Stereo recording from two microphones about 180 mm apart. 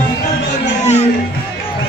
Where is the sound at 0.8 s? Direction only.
40° left (ahead or behind).